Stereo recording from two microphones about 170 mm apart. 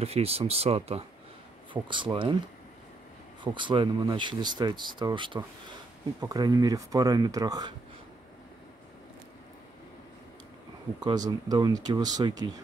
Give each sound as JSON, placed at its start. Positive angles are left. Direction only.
{"t": 0.0, "sound": "speech", "side_deg": -35}
{"t": 3.5, "sound": "speech", "side_deg": -30}
{"t": 11.1, "sound": "speech", "side_deg": -20}